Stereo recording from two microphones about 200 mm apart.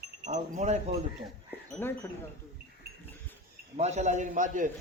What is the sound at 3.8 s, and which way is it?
Speech, 35° right (ahead or behind).